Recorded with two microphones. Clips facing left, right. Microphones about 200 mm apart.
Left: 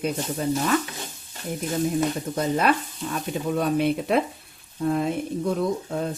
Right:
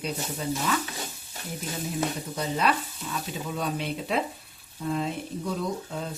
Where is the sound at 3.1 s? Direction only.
55° left (ahead or behind).